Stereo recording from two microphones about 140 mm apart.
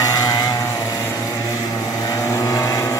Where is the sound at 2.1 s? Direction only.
25° left (ahead or behind).